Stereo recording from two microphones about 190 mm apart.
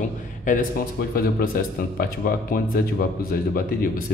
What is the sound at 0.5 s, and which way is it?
Speech, 50° left (ahead or behind).